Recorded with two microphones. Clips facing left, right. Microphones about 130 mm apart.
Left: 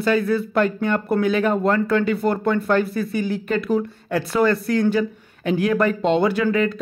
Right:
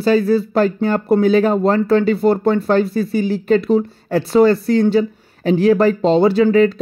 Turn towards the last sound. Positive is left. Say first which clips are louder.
# right 7 dB
turn(degrees=-30)  # may be behind; listen again after turning